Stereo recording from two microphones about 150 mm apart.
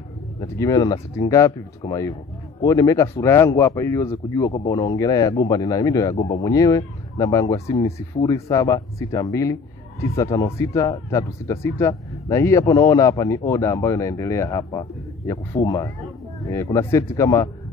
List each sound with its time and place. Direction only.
0.4 s speech: 25° left (ahead or behind)